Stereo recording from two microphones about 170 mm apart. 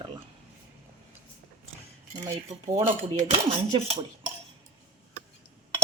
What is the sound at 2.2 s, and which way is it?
Speech, 30° right (ahead or behind).